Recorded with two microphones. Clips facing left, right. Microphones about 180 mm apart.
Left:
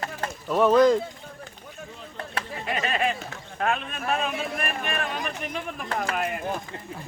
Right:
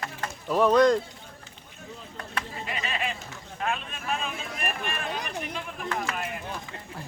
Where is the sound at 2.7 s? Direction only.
55° left (ahead or behind).